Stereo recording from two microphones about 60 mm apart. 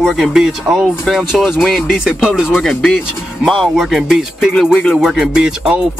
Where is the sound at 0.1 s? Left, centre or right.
Centre.